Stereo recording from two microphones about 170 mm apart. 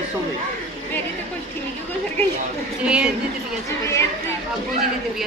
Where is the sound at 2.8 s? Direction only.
5° right (ahead or behind).